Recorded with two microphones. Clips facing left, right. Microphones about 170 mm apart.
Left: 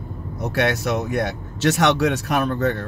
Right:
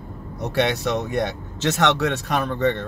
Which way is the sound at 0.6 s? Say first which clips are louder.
Even; 5° left (ahead or behind).